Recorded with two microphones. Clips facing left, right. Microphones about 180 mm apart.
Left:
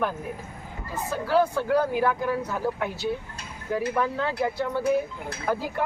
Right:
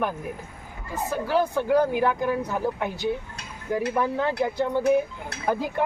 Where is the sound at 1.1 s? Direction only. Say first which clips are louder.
Left 1 dB; 15° right (ahead or behind).